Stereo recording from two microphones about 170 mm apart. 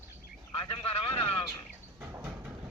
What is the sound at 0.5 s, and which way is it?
Vehicle, 25° left (ahead or behind).